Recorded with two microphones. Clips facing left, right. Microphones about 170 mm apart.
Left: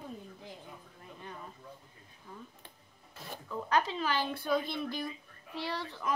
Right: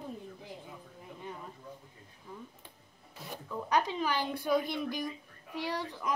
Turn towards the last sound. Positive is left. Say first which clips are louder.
# right 2 dB
turn(degrees=-15)  # may be behind; listen again after turning